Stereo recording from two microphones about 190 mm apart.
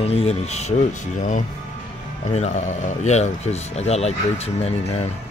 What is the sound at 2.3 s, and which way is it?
A man's voice, 35° left (ahead or behind).